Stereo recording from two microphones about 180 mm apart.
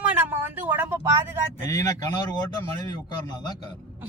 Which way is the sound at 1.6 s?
20° left (ahead or behind).